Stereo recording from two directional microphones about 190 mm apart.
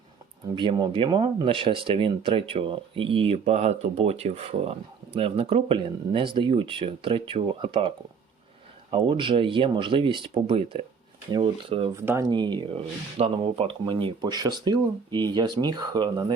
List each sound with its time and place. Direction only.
0.4 s speech: 25° right (ahead or behind)
11.9 s speech: 15° right (ahead or behind)